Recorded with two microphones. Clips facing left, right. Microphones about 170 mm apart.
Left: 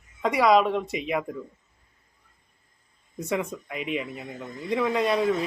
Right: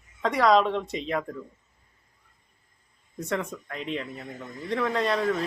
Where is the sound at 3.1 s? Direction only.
10° left (ahead or behind).